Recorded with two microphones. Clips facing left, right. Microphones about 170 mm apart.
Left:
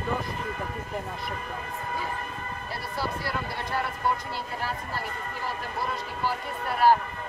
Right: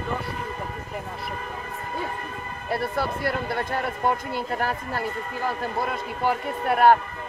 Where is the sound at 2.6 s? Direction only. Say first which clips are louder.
Right 8 dB; 55° right (ahead or behind).